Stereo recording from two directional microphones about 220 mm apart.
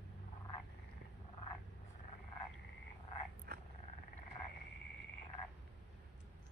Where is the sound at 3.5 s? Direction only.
45° right (ahead or behind).